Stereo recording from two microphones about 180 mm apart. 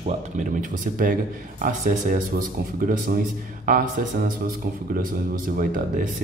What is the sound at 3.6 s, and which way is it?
Speech, 50° right (ahead or behind).